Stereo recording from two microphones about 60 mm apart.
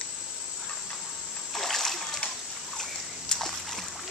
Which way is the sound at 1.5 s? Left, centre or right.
Centre.